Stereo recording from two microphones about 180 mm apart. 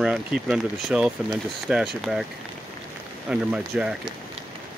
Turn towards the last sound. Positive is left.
turn(degrees=-5)  # may be behind; listen again after turning